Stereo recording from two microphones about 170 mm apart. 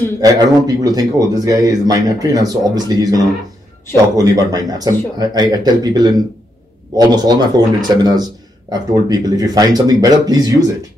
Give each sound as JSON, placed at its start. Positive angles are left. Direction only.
{"t": 0.2, "sound": "speech", "side_deg": -20}
{"t": 4.2, "sound": "speech", "side_deg": -20}